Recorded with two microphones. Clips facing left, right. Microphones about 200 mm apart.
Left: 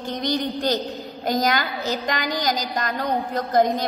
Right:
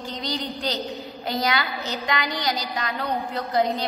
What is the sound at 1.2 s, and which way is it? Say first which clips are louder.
A woman's voice: left 4 dB; 45° left (ahead or behind).